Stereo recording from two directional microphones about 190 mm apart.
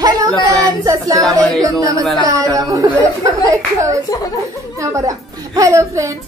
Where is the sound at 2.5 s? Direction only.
15° right (ahead or behind).